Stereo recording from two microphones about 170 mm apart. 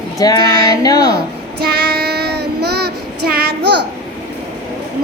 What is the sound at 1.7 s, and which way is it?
Child singing, 70° right (ahead or behind).